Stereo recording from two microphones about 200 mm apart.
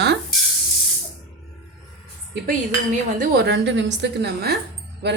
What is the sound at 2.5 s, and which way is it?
Speech, 40° right (ahead or behind).